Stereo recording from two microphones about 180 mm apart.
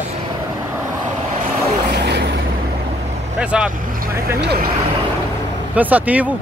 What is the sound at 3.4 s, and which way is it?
Speech, 5° right (ahead or behind).